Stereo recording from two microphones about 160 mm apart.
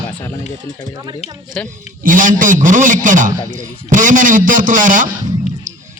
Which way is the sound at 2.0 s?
55° right (ahead or behind).